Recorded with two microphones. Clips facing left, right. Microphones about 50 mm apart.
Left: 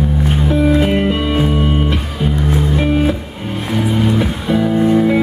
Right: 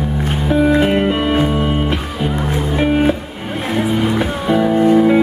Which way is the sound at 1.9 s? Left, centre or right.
Centre.